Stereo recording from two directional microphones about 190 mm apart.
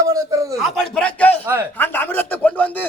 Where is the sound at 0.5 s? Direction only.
Centre (ahead or behind).